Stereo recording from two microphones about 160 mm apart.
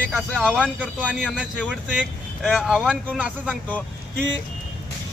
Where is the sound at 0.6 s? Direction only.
5° right (ahead or behind).